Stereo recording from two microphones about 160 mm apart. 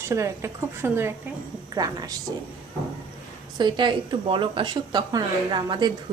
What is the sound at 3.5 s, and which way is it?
A woman's voice, 25° right (ahead or behind).